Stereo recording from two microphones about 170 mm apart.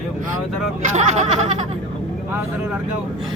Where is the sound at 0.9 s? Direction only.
40° right (ahead or behind).